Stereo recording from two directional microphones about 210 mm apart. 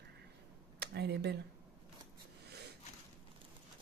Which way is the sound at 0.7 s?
50° right (ahead or behind).